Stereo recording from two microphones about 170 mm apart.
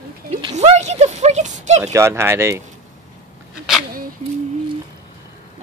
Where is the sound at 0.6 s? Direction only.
40° right (ahead or behind).